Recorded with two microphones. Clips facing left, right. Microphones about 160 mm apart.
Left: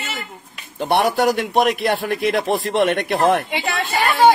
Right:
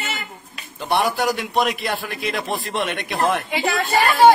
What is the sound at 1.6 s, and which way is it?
Speech, 60° left (ahead or behind).